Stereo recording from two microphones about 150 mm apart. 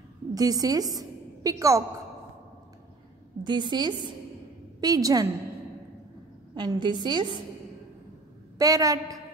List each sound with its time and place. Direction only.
0.3 s a woman's voice: 25° right (ahead or behind)
3.4 s a woman's voice: 30° right (ahead or behind)
6.5 s a woman's voice: 30° right (ahead or behind)
8.5 s a woman's voice: 25° right (ahead or behind)